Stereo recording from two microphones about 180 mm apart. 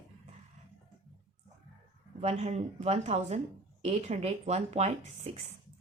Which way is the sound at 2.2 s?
40° right (ahead or behind).